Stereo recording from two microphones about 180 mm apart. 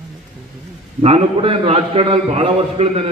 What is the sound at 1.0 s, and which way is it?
A man's voice, 35° right (ahead or behind).